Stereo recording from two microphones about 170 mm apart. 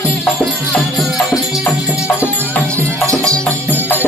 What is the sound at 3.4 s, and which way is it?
Music, 5° left (ahead or behind).